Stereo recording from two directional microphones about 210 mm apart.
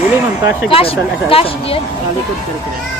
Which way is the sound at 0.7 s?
25° left (ahead or behind).